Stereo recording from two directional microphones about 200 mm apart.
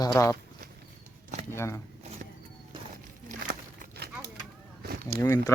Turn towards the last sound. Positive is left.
turn(degrees=15)  # may be behind; listen again after turning